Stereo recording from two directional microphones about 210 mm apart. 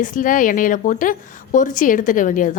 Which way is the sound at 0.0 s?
40° left (ahead or behind).